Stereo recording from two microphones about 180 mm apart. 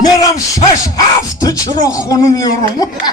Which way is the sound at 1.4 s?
20° left (ahead or behind).